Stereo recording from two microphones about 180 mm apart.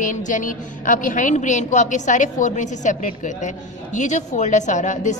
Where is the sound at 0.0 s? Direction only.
45° left (ahead or behind).